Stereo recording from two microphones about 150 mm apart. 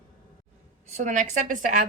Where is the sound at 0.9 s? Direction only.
55° right (ahead or behind).